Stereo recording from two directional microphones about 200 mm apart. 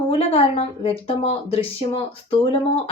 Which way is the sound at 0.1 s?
30° left (ahead or behind).